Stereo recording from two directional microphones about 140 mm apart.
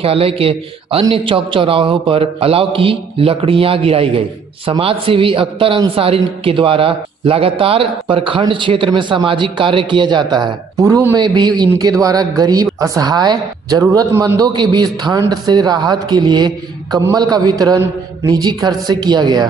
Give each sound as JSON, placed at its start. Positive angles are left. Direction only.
{"t": 0.0, "sound": "a man's voice", "side_deg": -45}
{"t": 11.1, "sound": "a man's voice", "side_deg": -30}